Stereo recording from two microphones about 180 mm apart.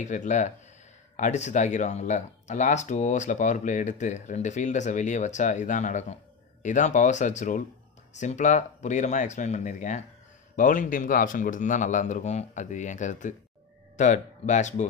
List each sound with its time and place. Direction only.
0.0 s speech: 45° left (ahead or behind)